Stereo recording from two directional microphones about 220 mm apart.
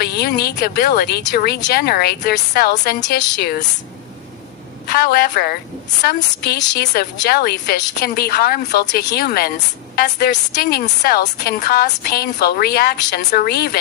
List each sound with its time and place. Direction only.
0.0 s a woman's voice: 45° left (ahead or behind)
4.8 s a woman's voice: 45° left (ahead or behind)
6.7 s a woman's voice: 50° left (ahead or behind)